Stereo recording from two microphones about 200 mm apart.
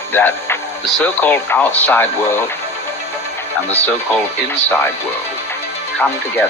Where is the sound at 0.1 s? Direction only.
10° left (ahead or behind).